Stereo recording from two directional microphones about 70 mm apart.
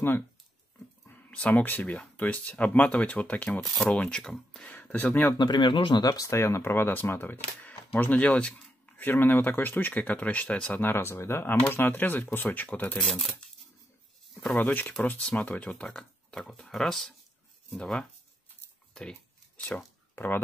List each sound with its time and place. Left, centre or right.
1.3 s speech: left
4.6 s speech: left
5.4 s speech: left
6.0 s speech: left
6.3 s speech: left; by 9.0 s centre
9.0 s speech: left
10.8 s speech: left
13.0 s speech: centre
14.6 s speech: left
19.5 s a sound: left
20.2 s speech: left